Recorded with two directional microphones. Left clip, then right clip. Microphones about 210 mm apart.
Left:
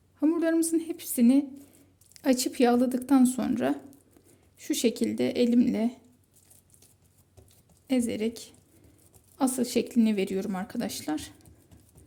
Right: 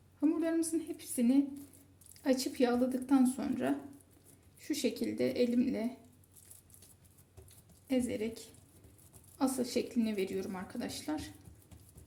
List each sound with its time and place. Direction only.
0.2 s a woman's voice: 60° left (ahead or behind)
7.9 s speech: 60° left (ahead or behind)